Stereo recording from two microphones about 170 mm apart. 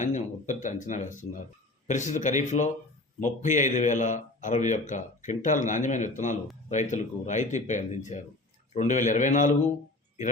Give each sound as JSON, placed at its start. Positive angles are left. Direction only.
{"t": 0.0, "sound": "a man's voice", "side_deg": 45}